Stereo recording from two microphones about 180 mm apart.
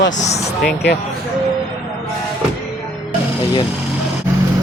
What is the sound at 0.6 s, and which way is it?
Speech, 65° left (ahead or behind).